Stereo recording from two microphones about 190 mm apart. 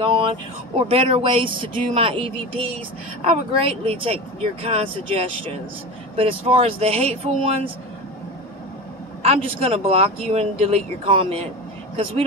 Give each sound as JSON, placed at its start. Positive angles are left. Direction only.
{"t": 0.0, "sound": "speech", "side_deg": -25}
{"t": 9.2, "sound": "speech", "side_deg": -30}